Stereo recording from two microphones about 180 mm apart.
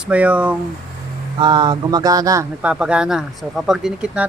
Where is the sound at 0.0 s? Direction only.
5° right (ahead or behind).